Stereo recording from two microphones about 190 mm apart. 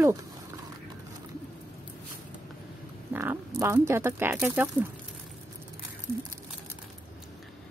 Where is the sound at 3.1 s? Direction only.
10° right (ahead or behind).